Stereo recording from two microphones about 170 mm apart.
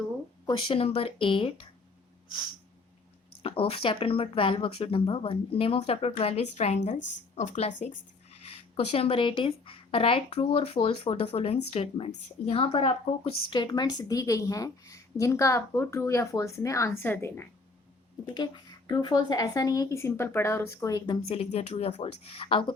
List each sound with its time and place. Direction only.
0.7 s a woman's voice: 35° left (ahead or behind)
3.4 s a woman's voice: 35° left (ahead or behind); by 17.5 s 15° left (ahead or behind)
18.3 s speech: 25° left (ahead or behind)
21.2 s a woman's voice: 40° left (ahead or behind)